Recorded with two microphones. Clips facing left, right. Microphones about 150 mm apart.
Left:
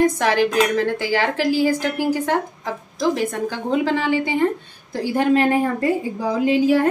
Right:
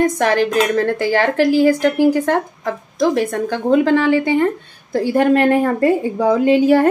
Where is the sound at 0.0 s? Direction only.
50° right (ahead or behind).